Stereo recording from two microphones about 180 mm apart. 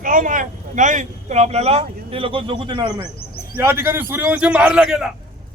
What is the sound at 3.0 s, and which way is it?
Bird, 60° left (ahead or behind).